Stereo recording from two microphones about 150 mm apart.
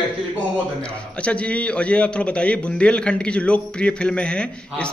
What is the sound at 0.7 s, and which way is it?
A man's voice, 10° left (ahead or behind).